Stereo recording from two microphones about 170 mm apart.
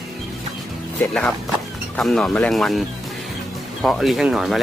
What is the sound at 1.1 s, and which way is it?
Speech, 5° left (ahead or behind).